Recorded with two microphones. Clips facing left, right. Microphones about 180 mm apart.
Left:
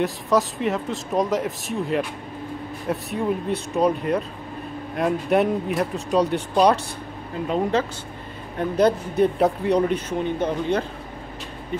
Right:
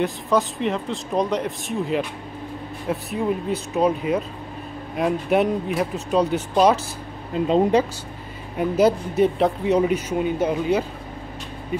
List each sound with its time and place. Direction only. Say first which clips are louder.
0.0 s speech: even; centre (ahead or behind)
7.3 s speech: right 5 dB; 20° right (ahead or behind)
8.5 s speech: right 1 dB; 5° right (ahead or behind)